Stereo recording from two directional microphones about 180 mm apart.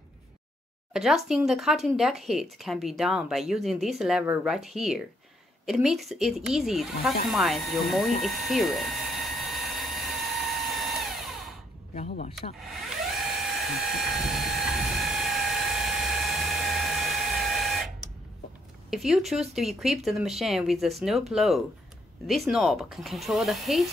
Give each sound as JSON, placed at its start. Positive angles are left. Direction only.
{"t": 0.9, "sound": "speech", "side_deg": 0}
{"t": 8.2, "sound": "a sound", "side_deg": 0}
{"t": 11.9, "sound": "speech", "side_deg": 40}
{"t": 13.4, "sound": "vehicle", "side_deg": 0}
{"t": 18.9, "sound": "speech", "side_deg": 0}